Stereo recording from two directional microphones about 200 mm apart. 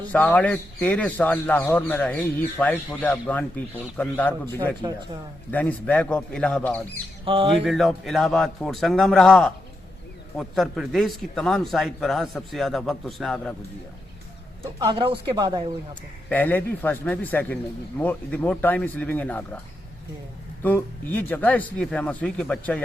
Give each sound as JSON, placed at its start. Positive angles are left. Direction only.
{"t": 0.1, "sound": "speech", "side_deg": 5}
{"t": 5.5, "sound": "speech", "side_deg": 10}
{"t": 7.3, "sound": "speech", "side_deg": -25}
{"t": 7.6, "sound": "a man's voice", "side_deg": 0}
{"t": 14.6, "sound": "speech", "side_deg": -20}
{"t": 16.3, "sound": "speech", "side_deg": 10}
{"t": 20.6, "sound": "speech", "side_deg": 10}